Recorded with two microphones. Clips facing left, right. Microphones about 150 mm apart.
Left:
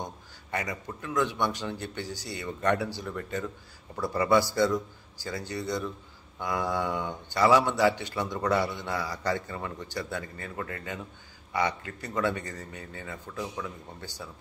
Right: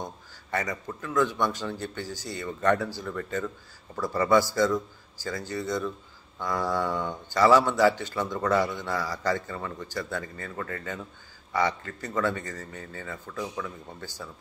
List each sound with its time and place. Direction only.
0.0 s a man's voice: 20° left (ahead or behind)